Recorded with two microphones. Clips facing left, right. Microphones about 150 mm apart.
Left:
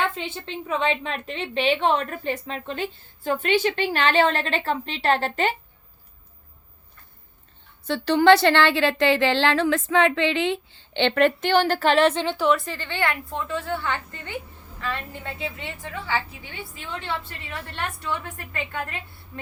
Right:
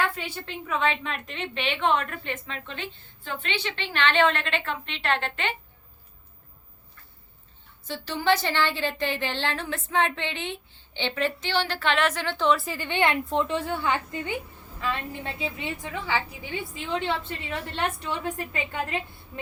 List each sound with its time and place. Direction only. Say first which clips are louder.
0.0 s a woman's voice: left 2 dB; 25° left (ahead or behind); by 5.5 s 40° left (ahead or behind)
7.9 s a woman's voice: left 9 dB; 70° left (ahead or behind); by 12.2 s 30° left (ahead or behind)
12.2 s a woman's voice: left 3 dB; 15° left (ahead or behind)
12.5 s a woman's voice: right 1 dB; 5° right (ahead or behind)